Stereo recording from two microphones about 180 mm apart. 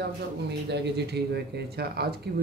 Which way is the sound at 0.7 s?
70° right (ahead or behind).